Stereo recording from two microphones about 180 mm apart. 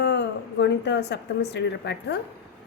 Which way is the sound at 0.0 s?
70° left (ahead or behind).